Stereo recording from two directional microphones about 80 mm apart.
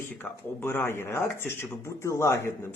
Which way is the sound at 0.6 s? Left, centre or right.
Left.